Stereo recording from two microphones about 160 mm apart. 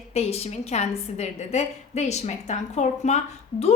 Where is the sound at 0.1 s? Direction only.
40° left (ahead or behind).